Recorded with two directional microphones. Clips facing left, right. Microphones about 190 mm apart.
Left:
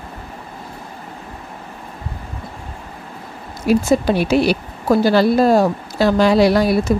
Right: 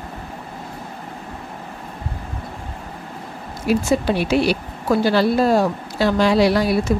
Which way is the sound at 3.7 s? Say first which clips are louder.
Left 3 dB; 45° left (ahead or behind).